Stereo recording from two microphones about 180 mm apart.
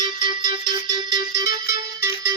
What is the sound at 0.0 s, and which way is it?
Music, 25° right (ahead or behind).